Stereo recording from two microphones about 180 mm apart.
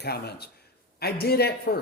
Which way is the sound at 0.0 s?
65° left (ahead or behind).